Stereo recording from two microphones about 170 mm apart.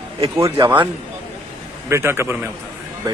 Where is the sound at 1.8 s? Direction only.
15° right (ahead or behind).